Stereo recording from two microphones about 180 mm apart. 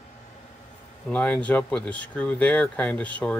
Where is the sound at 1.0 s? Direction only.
5° left (ahead or behind).